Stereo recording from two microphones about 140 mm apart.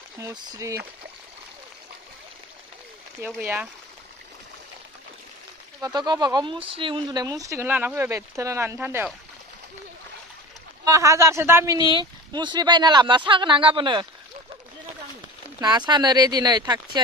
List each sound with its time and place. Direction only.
0.2 s speech: 25° right (ahead or behind)
5.8 s speech: 30° right (ahead or behind); by 9.1 s 10° right (ahead or behind)
10.9 s speech: 20° right (ahead or behind)
11.9 s speech: 35° right (ahead or behind)
15.6 s speech: 30° right (ahead or behind)